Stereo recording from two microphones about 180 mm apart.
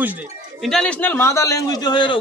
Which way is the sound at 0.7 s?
5° left (ahead or behind).